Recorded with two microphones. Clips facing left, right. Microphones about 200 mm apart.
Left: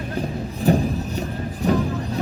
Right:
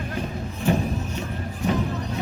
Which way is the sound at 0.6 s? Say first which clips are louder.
Left 4 dB; 35° left (ahead or behind).